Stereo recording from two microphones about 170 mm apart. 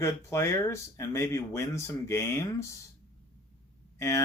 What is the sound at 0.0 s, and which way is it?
Speech, 15° left (ahead or behind).